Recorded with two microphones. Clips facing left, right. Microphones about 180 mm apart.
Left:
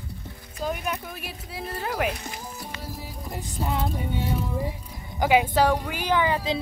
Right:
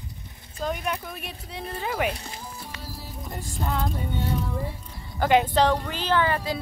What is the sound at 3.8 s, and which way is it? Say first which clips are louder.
A woman's voice: left 1 dB; 10° left (ahead or behind).